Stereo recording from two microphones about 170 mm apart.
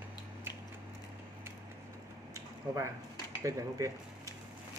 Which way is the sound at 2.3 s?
20° right (ahead or behind).